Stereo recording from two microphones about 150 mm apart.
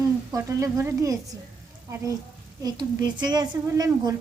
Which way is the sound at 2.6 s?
25° right (ahead or behind).